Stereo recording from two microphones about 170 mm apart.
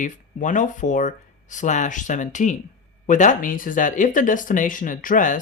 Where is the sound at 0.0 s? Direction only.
50° left (ahead or behind).